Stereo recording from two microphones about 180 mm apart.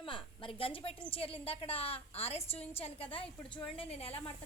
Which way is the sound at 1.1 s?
30° left (ahead or behind).